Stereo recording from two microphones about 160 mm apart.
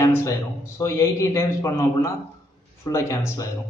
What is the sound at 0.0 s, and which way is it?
A man's voice, 20° left (ahead or behind).